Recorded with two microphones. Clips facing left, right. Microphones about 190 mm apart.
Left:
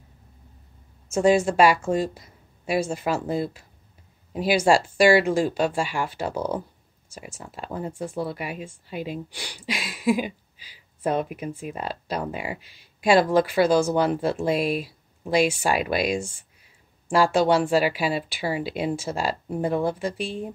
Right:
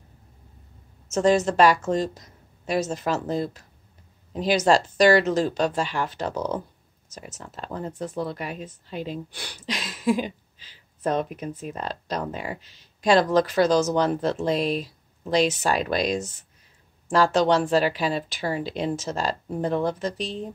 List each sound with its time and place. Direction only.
1.1 s speech: 10° left (ahead or behind)